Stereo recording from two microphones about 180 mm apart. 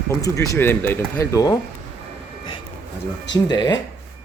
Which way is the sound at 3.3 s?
25° left (ahead or behind).